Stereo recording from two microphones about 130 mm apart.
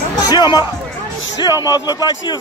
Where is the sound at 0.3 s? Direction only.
30° left (ahead or behind).